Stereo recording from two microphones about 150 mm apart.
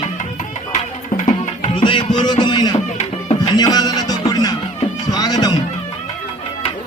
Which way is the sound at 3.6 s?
25° left (ahead or behind).